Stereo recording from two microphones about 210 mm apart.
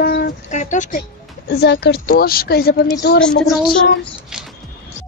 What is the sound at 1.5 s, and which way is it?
A child's voice, 55° left (ahead or behind).